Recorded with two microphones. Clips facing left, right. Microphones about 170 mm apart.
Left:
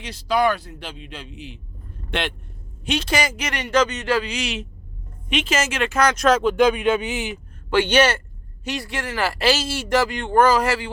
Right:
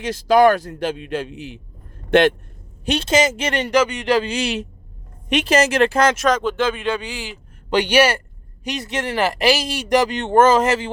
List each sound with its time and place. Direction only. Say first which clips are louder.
0.0 s a man's voice: right 7 dB; 45° right (ahead or behind)
3.1 s speech: right 6 dB; 20° right (ahead or behind)
3.7 s speech: right 1 dB; 10° right (ahead or behind)
4.2 s speech: right 5 dB; 30° right (ahead or behind)
6.1 s speech: left 2 dB; 5° left (ahead or behind)
7.7 s speech: right 1 dB; 15° right (ahead or behind)